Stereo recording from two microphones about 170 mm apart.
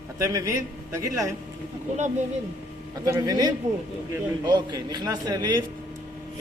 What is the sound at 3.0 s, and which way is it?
Speech, 20° right (ahead or behind).